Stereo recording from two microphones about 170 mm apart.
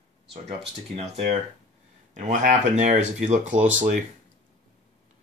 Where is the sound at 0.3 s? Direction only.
40° right (ahead or behind).